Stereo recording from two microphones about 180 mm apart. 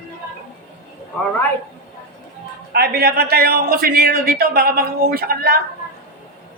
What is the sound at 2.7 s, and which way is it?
A man's voice, 60° right (ahead or behind).